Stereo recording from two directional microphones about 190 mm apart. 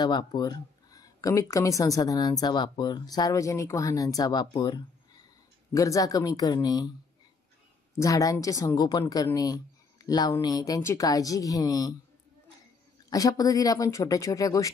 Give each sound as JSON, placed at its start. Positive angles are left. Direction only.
{"t": 0.0, "sound": "speech", "side_deg": 20}
{"t": 8.0, "sound": "speech", "side_deg": 15}
{"t": 13.1, "sound": "speech", "side_deg": 20}